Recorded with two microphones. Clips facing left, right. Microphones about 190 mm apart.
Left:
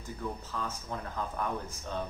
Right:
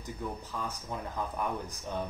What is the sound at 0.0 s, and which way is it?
Speech, 15° right (ahead or behind).